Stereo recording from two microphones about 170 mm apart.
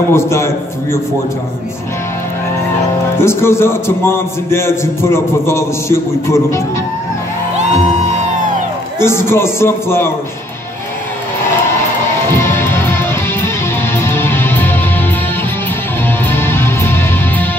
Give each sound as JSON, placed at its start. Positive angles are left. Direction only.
{"t": 0.1, "sound": "a man's voice", "side_deg": 15}
{"t": 3.2, "sound": "a man's voice", "side_deg": 15}
{"t": 9.0, "sound": "a man's voice", "side_deg": 15}
{"t": 12.3, "sound": "music", "side_deg": 15}
{"t": 16.3, "sound": "music", "side_deg": 15}